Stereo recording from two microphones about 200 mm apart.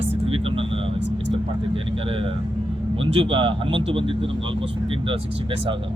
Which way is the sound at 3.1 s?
30° right (ahead or behind).